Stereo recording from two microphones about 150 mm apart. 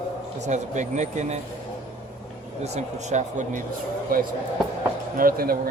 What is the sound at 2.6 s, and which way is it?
Speech, 50° right (ahead or behind).